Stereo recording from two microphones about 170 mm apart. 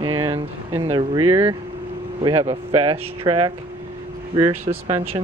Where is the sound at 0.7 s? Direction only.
15° right (ahead or behind).